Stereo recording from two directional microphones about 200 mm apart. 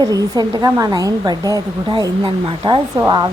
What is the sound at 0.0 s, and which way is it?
Speech, 20° right (ahead or behind).